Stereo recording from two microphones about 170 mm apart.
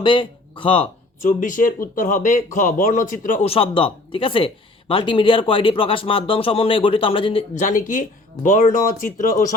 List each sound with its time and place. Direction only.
0.0 s speech: 30° left (ahead or behind)
1.2 s speech: 50° left (ahead or behind)
3.4 s speech: 35° left (ahead or behind)
7.5 s speech: 50° left (ahead or behind)